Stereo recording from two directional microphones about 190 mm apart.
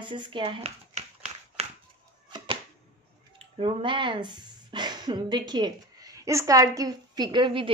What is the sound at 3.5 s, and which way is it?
A woman's voice, 30° right (ahead or behind).